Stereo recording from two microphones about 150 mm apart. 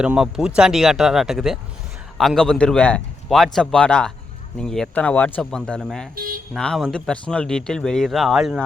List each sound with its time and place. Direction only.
0.0 s speech: 5° right (ahead or behind)
6.1 s a sound: 75° right (ahead or behind)
6.6 s speech: 5° left (ahead or behind)